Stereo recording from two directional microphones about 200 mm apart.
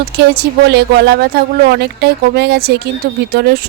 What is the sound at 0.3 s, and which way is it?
Speech, 55° right (ahead or behind).